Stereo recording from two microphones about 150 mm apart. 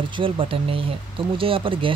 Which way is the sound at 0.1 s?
35° right (ahead or behind).